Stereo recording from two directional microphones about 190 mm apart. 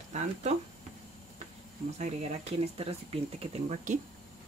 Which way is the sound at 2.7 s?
30° right (ahead or behind).